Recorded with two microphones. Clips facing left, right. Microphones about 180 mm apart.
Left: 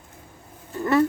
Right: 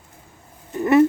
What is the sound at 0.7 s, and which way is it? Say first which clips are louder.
Speech: right 5 dB; 20° right (ahead or behind).